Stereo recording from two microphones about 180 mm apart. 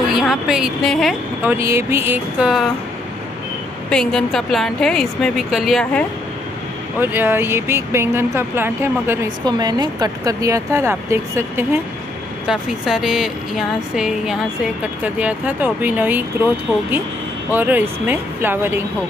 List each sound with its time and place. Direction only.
0.1 s speech: 5° right (ahead or behind)
1.4 s speech: 15° right (ahead or behind)
3.9 s a woman's voice: 5° left (ahead or behind)
7.0 s speech: 10° right (ahead or behind)
9.4 s speech: 25° right (ahead or behind)
12.4 s speech: centre (ahead or behind)
17.5 s speech: 10° right (ahead or behind)